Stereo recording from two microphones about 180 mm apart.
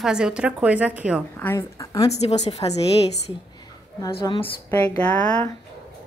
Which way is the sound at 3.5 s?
25° left (ahead or behind).